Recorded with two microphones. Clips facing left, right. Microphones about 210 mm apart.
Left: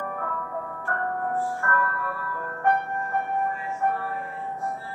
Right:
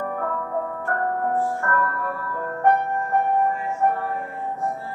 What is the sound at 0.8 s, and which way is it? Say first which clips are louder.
Music: right 3 dB; 40° right (ahead or behind).